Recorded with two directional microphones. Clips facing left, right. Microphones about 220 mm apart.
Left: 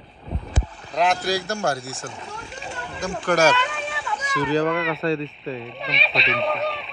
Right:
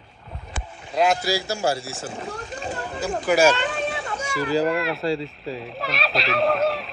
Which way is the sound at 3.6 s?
40° right (ahead or behind).